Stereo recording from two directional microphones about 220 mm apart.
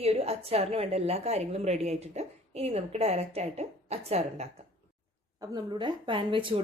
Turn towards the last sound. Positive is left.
turn(degrees=-25)  # may be behind; listen again after turning